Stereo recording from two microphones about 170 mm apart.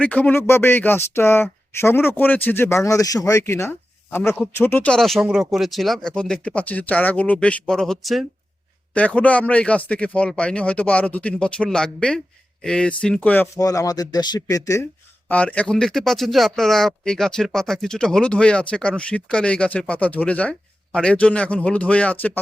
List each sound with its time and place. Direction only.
0.0 s speech: 10° left (ahead or behind)
15.3 s speech: 10° left (ahead or behind)